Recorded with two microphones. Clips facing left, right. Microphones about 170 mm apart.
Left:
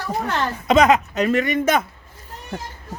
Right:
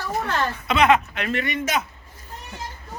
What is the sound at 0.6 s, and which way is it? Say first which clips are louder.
A man's voice: left 4 dB; 40° left (ahead or behind).